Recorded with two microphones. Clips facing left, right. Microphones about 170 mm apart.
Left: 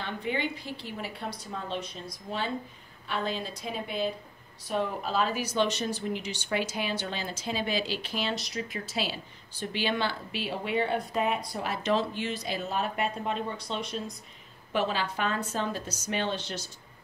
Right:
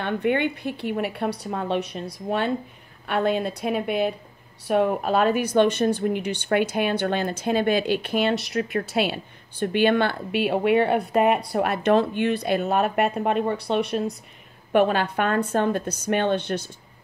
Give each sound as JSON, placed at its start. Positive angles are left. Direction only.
{"t": 0.0, "sound": "speech", "side_deg": -60}